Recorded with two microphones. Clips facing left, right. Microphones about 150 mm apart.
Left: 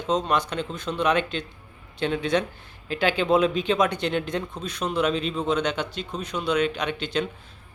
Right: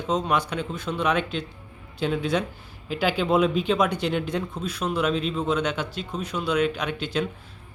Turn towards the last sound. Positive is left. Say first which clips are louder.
# even
turn(degrees=-5)  # may be behind; listen again after turning